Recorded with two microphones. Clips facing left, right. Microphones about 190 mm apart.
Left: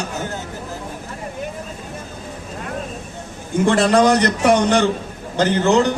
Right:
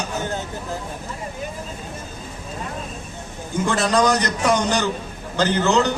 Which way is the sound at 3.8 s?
60° left (ahead or behind).